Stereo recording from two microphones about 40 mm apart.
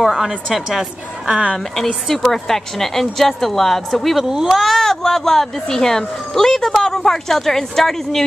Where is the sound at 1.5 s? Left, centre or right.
Centre.